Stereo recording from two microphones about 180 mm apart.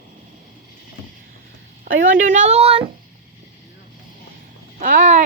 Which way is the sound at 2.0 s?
45° right (ahead or behind).